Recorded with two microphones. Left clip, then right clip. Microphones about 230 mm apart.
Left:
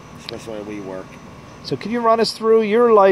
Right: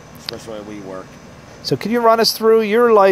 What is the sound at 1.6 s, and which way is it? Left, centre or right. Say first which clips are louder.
Speech: right 4 dB; right.